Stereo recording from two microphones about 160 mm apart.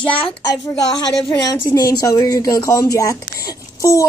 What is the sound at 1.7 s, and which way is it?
A woman's voice, 20° left (ahead or behind).